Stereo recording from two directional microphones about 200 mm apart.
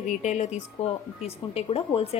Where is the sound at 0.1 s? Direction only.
35° left (ahead or behind).